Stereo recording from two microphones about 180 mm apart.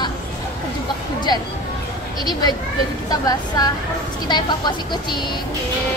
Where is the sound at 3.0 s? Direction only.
20° left (ahead or behind).